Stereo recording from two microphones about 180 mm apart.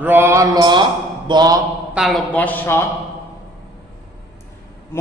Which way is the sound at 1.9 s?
Centre (ahead or behind).